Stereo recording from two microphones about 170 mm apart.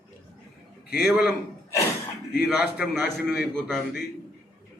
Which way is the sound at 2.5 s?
Centre (ahead or behind).